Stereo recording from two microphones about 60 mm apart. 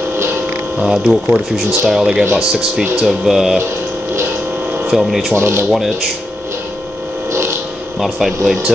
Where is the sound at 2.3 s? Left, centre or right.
Centre.